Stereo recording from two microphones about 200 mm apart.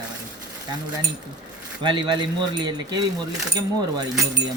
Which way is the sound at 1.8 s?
25° right (ahead or behind).